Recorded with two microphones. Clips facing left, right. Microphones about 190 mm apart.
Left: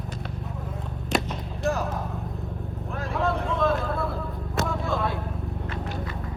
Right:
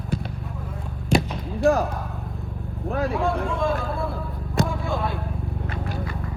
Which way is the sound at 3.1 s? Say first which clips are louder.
Right 2 dB; centre (ahead or behind).